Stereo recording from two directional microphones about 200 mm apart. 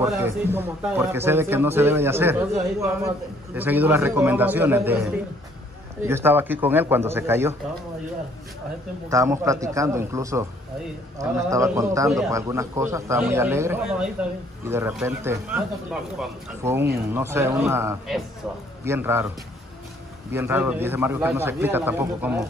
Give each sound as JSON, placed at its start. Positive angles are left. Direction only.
{"t": 0.0, "sound": "speech", "side_deg": -10}
{"t": 3.5, "sound": "speech", "side_deg": -10}
{"t": 9.1, "sound": "speech", "side_deg": -15}